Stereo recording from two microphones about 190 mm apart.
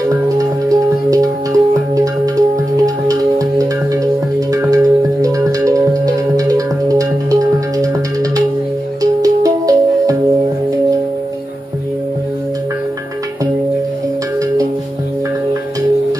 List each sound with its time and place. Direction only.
0.4 s music: 20° right (ahead or behind)